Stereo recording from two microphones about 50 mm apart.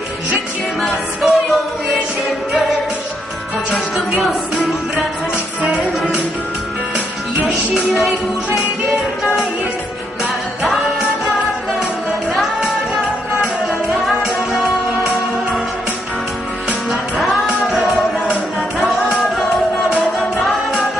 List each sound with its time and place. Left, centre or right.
0.8 s music: centre
3.9 s music: centre
6.9 s music: right
8.9 s music: centre
12.3 s music: centre
14.3 s music: centre
17.2 s music: centre